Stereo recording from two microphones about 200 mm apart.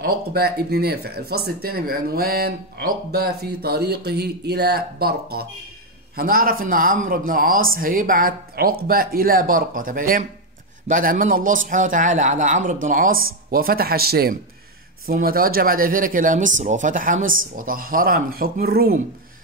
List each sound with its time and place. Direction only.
0.0 s a man's voice: 50° right (ahead or behind)